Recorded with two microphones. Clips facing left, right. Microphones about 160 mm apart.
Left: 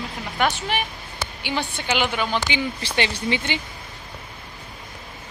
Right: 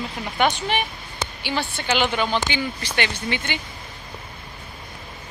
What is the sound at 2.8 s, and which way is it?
Speech, 30° left (ahead or behind).